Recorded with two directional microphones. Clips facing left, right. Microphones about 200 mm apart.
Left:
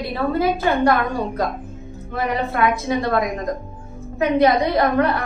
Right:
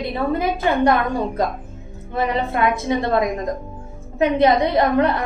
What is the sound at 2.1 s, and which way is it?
A woman's voice, 25° right (ahead or behind).